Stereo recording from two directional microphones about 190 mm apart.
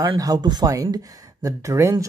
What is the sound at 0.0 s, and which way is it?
Speech, 20° right (ahead or behind).